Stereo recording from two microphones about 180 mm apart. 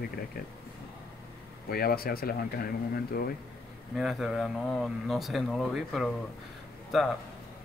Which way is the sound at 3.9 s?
Centre (ahead or behind).